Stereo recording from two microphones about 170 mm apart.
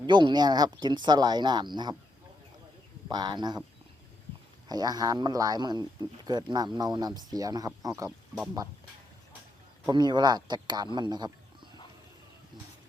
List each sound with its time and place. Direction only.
0.1 s speech: 25° right (ahead or behind)
3.1 s speech: 25° right (ahead or behind)
4.7 s speech: 25° right (ahead or behind)
9.8 s speech: 25° right (ahead or behind)
10.9 s a sound: 25° right (ahead or behind)